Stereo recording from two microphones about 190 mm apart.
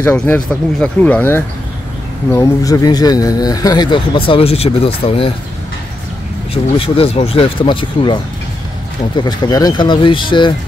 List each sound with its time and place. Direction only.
0.0 s speech: 10° left (ahead or behind); by 5.3 s 30° left (ahead or behind)
6.5 s speech: 30° left (ahead or behind)